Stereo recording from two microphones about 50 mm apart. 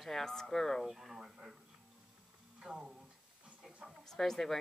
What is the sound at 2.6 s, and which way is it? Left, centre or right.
Speech, centre.